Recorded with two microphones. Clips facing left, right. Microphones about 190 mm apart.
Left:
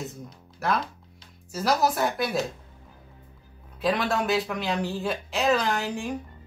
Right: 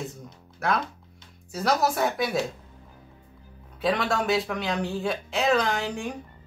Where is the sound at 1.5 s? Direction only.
Centre (ahead or behind).